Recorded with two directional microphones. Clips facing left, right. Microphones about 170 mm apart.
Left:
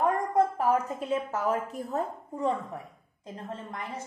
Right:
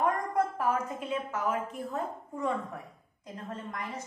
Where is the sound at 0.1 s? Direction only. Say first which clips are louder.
Left 4 dB; 30° left (ahead or behind).